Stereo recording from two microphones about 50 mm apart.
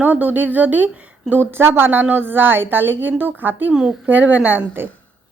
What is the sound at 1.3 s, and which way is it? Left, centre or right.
A woman's voice, right.